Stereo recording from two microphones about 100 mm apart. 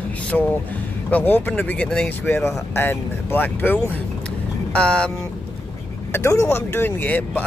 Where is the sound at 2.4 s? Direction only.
20° left (ahead or behind).